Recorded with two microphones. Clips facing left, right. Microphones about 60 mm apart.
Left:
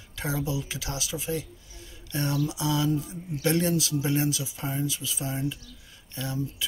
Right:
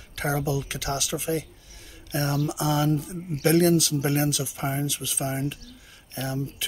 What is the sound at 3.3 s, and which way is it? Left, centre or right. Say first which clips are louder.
Speech: right 5 dB; right.